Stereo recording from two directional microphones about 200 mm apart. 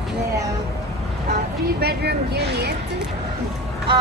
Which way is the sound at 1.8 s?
55° right (ahead or behind).